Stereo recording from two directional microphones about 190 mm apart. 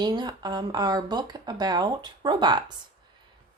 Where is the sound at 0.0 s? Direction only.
20° right (ahead or behind).